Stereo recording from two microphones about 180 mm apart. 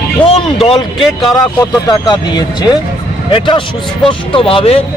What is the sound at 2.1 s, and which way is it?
Speech, 25° left (ahead or behind).